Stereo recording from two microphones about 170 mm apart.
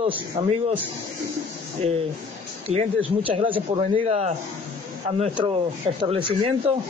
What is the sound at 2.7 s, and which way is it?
A man's voice, 30° right (ahead or behind).